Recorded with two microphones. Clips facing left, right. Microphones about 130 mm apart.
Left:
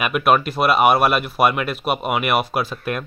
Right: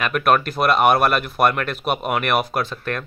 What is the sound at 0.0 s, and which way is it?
Speech, 5° left (ahead or behind).